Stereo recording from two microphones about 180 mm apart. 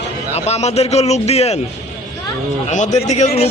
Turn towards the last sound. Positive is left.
turn(degrees=35)  # may be behind; listen again after turning